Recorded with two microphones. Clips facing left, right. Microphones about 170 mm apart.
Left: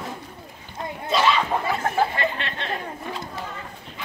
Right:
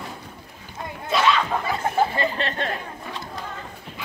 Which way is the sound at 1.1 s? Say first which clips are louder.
Even; 5° left (ahead or behind).